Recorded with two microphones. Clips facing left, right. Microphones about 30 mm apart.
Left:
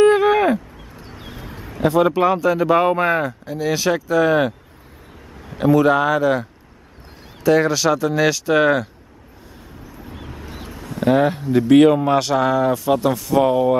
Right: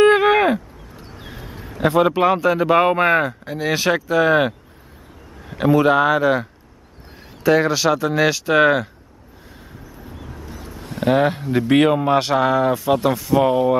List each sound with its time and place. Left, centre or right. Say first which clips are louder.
0.0 s a sound: even; right
1.9 s speech: even; centre
7.4 s speech: even; centre
10.1 s vehicle: left 1 dB; left
10.9 s speech: left 1 dB; right
11.5 s speech: left 4 dB; centre
13.4 s speech: left 1 dB; right